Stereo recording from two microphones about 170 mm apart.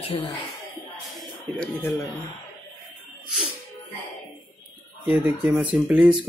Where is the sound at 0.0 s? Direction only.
35° left (ahead or behind).